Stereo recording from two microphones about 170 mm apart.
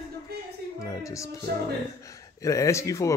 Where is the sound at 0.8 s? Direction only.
20° left (ahead or behind).